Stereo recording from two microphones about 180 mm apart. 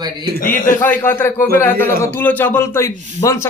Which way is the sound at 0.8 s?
10° left (ahead or behind).